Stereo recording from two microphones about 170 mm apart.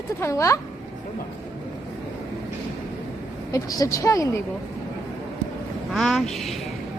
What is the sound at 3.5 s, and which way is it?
Speech, 20° left (ahead or behind).